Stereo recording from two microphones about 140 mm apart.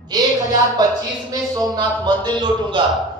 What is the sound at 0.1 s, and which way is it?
Speech, 30° right (ahead or behind).